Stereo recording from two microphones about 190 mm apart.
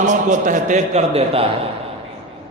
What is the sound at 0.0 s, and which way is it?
A man's voice, 40° right (ahead or behind).